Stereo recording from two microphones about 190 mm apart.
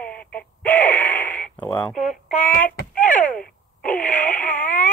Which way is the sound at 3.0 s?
40° left (ahead or behind).